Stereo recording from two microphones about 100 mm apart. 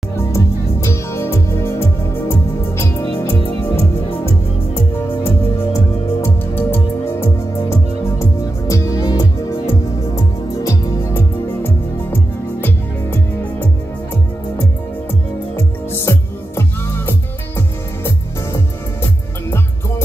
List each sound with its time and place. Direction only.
0.3 s music: 30° left (ahead or behind)
5.1 s music: 25° left (ahead or behind)
15.5 s music: 25° left (ahead or behind)